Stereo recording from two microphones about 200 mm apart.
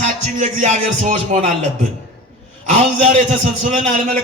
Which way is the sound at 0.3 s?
35° right (ahead or behind).